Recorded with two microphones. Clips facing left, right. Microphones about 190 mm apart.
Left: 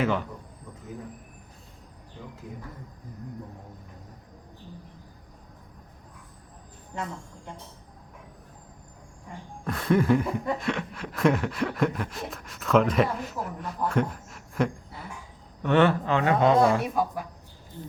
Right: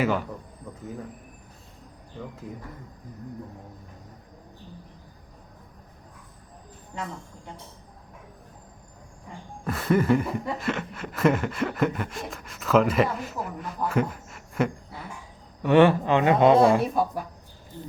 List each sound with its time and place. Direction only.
0.0 s chuckle: 5° right (ahead or behind)
9.6 s chuckle: 5° right (ahead or behind)
15.6 s speech: 10° right (ahead or behind); by 17.0 s 30° right (ahead or behind)